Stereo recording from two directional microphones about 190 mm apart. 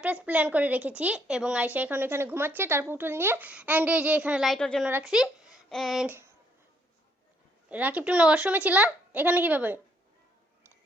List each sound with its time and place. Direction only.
0.0 s speech: 10° right (ahead or behind)
6.1 s speech: 10° right (ahead or behind)
7.7 s speech: 10° right (ahead or behind)